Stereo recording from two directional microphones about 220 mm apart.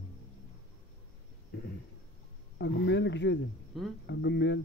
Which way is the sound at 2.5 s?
50° left (ahead or behind).